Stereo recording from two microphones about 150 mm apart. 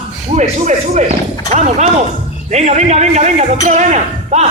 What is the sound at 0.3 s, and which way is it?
Speech, 50° right (ahead or behind).